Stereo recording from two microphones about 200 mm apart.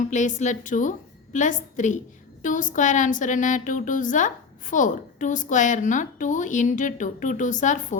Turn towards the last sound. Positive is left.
turn(degrees=40)  # may be behind; listen again after turning